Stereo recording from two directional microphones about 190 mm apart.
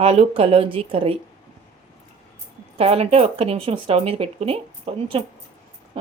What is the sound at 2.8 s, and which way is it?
Speech, 30° right (ahead or behind).